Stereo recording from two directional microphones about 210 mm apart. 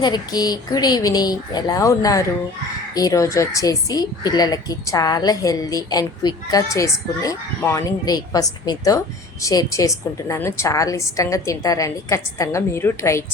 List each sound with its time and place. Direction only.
0.0 s speech: 20° left (ahead or behind)